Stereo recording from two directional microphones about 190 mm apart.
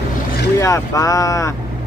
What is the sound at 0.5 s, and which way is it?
Speech, 15° left (ahead or behind).